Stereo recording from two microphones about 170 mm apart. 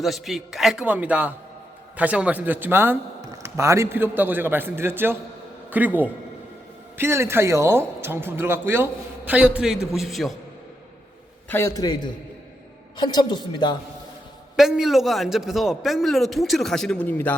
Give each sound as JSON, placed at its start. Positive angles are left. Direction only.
{"t": 0.0, "sound": "a man's voice", "side_deg": 0}
{"t": 11.4, "sound": "speech", "side_deg": 15}
{"t": 14.5, "sound": "a man's voice", "side_deg": -5}